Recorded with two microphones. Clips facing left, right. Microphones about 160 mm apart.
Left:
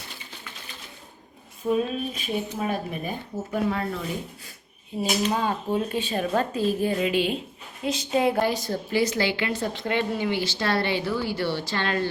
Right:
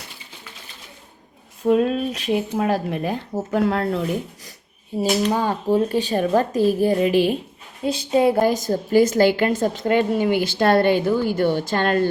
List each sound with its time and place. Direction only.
1.6 s speech: 75° right (ahead or behind)
4.9 s speech: 35° right (ahead or behind)
7.9 s speech: 30° right (ahead or behind)
8.4 s a woman's voice: 45° right (ahead or behind)